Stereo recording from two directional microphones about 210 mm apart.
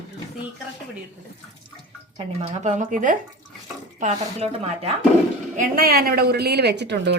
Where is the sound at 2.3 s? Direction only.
35° right (ahead or behind).